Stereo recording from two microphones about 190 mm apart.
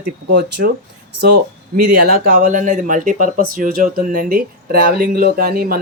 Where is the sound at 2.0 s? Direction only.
50° right (ahead or behind).